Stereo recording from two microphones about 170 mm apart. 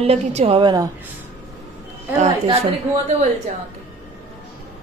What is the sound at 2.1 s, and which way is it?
Speech, 40° right (ahead or behind).